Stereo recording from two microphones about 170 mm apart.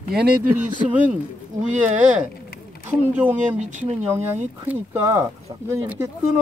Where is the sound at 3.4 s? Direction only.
45° right (ahead or behind).